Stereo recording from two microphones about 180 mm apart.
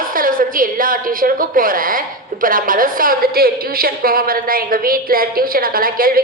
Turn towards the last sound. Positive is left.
turn(degrees=-55)  # may be behind; listen again after turning